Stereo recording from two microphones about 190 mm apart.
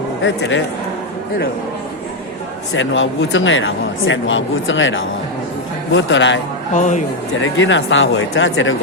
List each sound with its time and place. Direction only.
0.2 s a man's voice: 75° left (ahead or behind)
2.7 s a man's voice: 85° left
6.7 s speech: 40° left (ahead or behind)
7.4 s speech: 90° left